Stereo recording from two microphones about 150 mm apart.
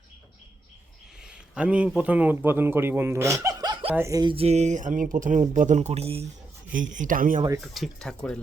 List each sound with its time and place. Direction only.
1.2 s a man's voice: 5° right (ahead or behind); by 4.4 s 25° right (ahead or behind)
4.4 s speech: 45° right (ahead or behind)
6.7 s speech: 60° right (ahead or behind)
7.6 s speech: centre (ahead or behind)